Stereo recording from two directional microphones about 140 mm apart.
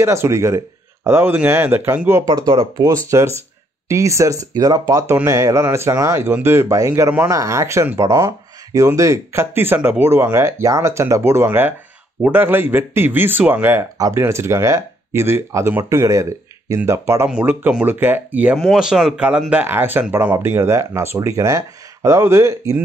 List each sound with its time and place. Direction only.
0.0 s speech: 20° right (ahead or behind)
2.4 s speech: 40° right (ahead or behind)
3.1 s speech: 20° right (ahead or behind)